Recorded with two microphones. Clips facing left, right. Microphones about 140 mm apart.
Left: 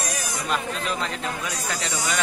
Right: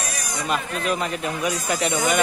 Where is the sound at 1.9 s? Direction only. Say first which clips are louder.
Right 6 dB; 55° right (ahead or behind).